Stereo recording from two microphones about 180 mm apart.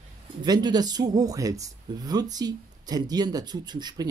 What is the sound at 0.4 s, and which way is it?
Speech, 25° right (ahead or behind).